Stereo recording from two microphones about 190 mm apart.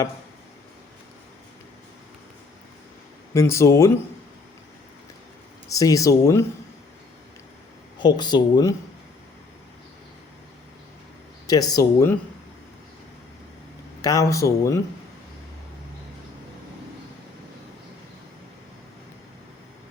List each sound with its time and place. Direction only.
3.3 s speech: 15° left (ahead or behind)
5.6 s speech: 15° left (ahead or behind)
7.9 s speech: 20° left (ahead or behind)
11.4 s speech: 20° left (ahead or behind)
14.0 s speech: 20° left (ahead or behind)